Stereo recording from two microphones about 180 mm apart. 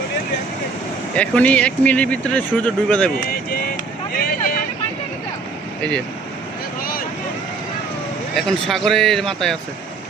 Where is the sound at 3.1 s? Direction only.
55° left (ahead or behind).